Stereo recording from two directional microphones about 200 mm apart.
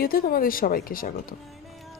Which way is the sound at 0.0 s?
50° left (ahead or behind).